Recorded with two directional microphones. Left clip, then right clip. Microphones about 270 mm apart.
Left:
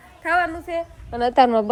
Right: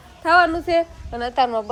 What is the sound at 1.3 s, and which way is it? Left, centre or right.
Speech, left.